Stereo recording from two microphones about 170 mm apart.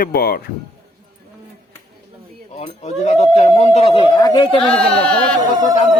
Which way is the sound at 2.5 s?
40° left (ahead or behind).